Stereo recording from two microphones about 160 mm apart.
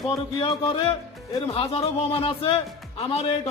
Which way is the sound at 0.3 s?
30° left (ahead or behind).